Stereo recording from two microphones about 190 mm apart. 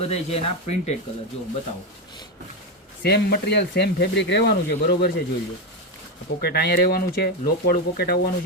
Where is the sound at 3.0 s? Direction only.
60° left (ahead or behind).